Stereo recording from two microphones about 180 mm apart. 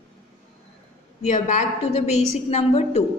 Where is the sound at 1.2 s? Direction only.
40° left (ahead or behind).